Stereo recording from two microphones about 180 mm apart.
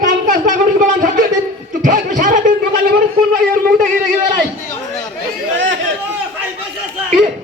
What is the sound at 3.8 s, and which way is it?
Speech, 50° right (ahead or behind).